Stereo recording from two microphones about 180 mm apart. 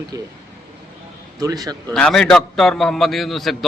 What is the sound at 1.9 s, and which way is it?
A man's voice, 5° left (ahead or behind).